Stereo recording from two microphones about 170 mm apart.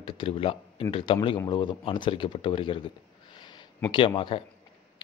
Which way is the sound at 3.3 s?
25° left (ahead or behind).